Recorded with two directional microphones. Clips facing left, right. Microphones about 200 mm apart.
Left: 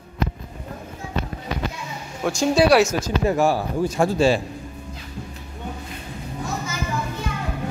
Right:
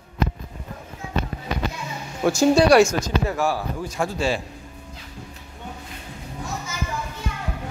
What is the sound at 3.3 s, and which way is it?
A man's voice, 25° left (ahead or behind).